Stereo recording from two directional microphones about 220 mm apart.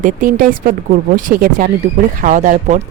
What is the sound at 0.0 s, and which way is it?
Speech, 35° right (ahead or behind).